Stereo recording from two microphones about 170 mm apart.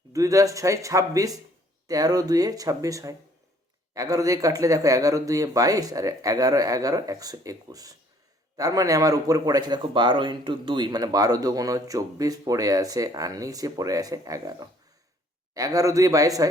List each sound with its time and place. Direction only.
0.1 s a man's voice: 20° right (ahead or behind)